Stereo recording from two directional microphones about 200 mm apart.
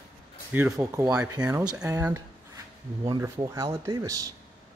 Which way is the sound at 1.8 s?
15° right (ahead or behind).